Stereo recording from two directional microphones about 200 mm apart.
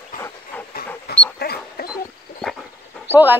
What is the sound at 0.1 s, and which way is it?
Dog, 45° left (ahead or behind).